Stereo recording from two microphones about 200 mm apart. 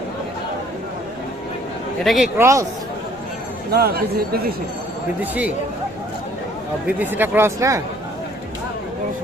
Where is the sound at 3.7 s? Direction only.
50° right (ahead or behind).